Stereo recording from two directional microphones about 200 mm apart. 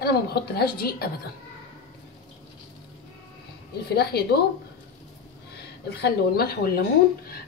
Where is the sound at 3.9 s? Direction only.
50° left (ahead or behind).